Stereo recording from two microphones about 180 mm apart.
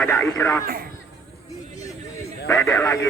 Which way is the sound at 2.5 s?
15° left (ahead or behind).